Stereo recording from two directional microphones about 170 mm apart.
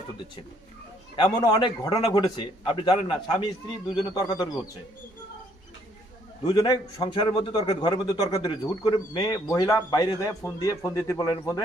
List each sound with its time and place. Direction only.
1.1 s a man's voice: 25° left (ahead or behind)
6.4 s a man's voice: 25° left (ahead or behind)